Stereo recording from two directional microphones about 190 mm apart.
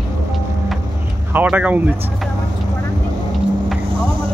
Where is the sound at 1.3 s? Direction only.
10° right (ahead or behind).